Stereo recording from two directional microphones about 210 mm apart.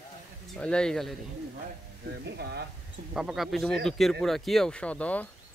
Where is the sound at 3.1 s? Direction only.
Centre (ahead or behind).